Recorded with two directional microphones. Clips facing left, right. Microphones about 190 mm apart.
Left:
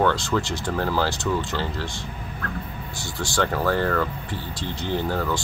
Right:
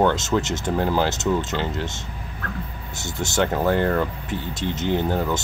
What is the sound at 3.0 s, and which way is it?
Speech, 20° right (ahead or behind).